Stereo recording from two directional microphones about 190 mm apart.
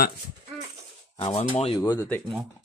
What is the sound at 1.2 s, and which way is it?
Speech, 30° left (ahead or behind).